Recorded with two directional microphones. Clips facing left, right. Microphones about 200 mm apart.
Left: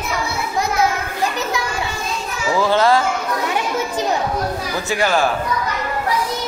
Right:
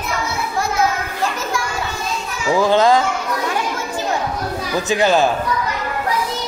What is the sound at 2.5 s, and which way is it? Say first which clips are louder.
Speech: right 2 dB; 15° right (ahead or behind).